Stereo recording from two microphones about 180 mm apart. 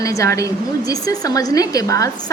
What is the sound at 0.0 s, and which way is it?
A woman's voice, 15° left (ahead or behind).